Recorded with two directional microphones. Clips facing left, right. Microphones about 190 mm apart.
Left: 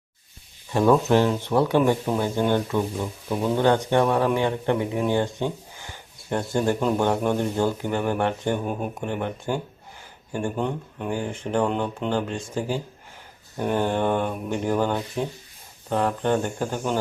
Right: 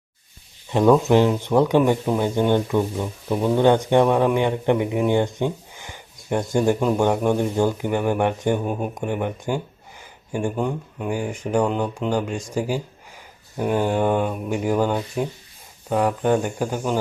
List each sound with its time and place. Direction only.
0.7 s speech: 20° right (ahead or behind)
2.6 s speech: 5° right (ahead or behind)
8.5 s speech: centre (ahead or behind)
9.0 s speech: 10° right (ahead or behind)
11.6 s speech: centre (ahead or behind)